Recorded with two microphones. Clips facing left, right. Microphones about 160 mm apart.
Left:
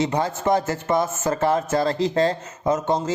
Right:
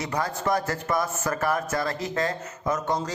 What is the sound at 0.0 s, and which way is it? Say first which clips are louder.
Speech: left 5 dB; 25° left (ahead or behind).